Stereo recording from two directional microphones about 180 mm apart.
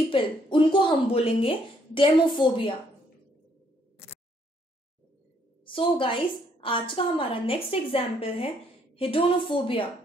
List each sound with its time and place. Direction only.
0.1 s speech: 25° left (ahead or behind)
5.7 s a woman's voice: 30° left (ahead or behind)